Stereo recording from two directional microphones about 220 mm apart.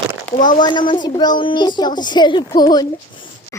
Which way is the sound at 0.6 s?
20° left (ahead or behind).